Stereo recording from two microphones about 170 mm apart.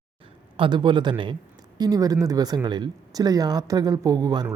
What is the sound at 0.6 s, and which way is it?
Speech, 25° right (ahead or behind).